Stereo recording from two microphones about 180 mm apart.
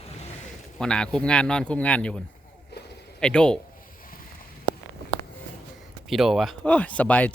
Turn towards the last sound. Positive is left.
turn(degrees=10)  # may be behind; listen again after turning